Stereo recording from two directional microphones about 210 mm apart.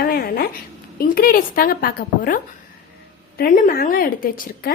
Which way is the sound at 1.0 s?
45° left (ahead or behind).